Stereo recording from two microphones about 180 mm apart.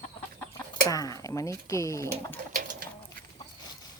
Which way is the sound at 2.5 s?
50° right (ahead or behind).